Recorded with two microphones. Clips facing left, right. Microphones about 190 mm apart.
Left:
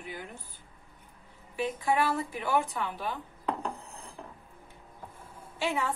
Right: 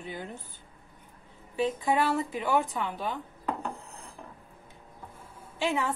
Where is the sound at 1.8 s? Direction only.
20° right (ahead or behind).